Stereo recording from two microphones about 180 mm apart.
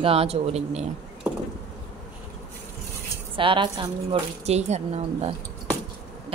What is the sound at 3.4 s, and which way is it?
A woman's voice, 30° right (ahead or behind).